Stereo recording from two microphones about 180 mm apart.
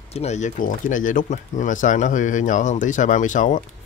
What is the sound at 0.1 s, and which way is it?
Speech, 40° left (ahead or behind).